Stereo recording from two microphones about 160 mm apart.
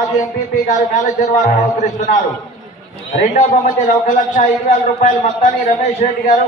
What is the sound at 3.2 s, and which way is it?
A man's voice, 50° left (ahead or behind).